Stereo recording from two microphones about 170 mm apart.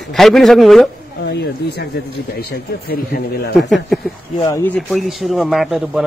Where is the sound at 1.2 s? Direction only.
85° left; by 3.5 s 65° left (ahead or behind).